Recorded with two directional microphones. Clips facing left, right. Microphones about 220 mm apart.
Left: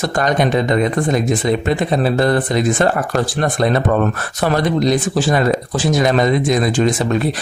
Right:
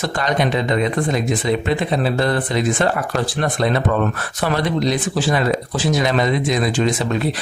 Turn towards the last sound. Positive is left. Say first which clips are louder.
# left 3 dB
turn(degrees=45)  # may be behind; listen again after turning